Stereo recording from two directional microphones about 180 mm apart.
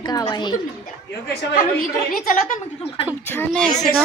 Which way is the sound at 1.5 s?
55° left (ahead or behind).